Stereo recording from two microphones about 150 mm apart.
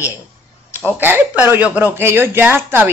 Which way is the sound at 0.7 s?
10° left (ahead or behind).